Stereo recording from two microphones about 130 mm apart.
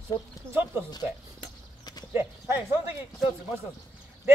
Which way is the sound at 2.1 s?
20° right (ahead or behind).